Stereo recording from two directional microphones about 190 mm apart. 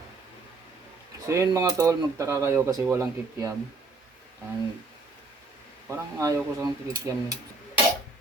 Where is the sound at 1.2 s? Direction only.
15° right (ahead or behind).